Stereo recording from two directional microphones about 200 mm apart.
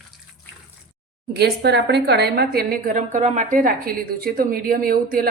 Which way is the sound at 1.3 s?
55° right (ahead or behind).